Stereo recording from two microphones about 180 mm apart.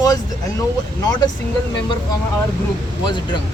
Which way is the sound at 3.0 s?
25° left (ahead or behind).